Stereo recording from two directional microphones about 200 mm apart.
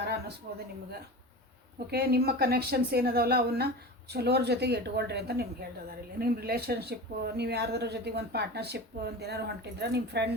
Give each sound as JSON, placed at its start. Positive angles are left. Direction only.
{"t": 0.5, "sound": "a woman's voice", "side_deg": -50}
{"t": 1.9, "sound": "a woman's voice", "side_deg": -50}